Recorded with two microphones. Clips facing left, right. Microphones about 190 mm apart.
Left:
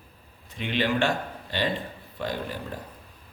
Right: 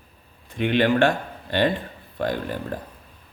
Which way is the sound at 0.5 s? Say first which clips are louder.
Right 7 dB; 55° right (ahead or behind).